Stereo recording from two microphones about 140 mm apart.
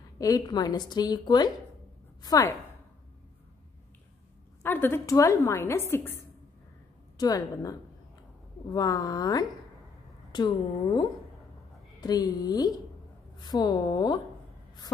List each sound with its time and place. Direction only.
0.2 s a woman's voice: 25° left (ahead or behind)
4.6 s a woman's voice: 15° left (ahead or behind)
8.7 s a woman's voice: 25° left (ahead or behind)